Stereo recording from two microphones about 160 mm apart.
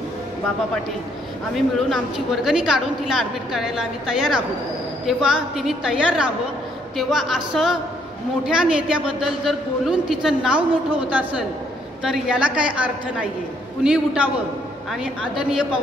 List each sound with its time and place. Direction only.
1.5 s a woman's voice: centre (ahead or behind)